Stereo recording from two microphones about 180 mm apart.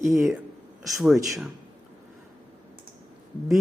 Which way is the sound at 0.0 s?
15° right (ahead or behind).